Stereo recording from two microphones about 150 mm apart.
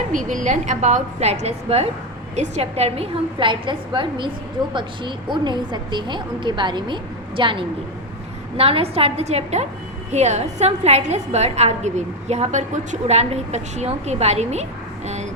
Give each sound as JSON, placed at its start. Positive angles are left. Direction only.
{"t": 0.1, "sound": "a woman's voice", "side_deg": -60}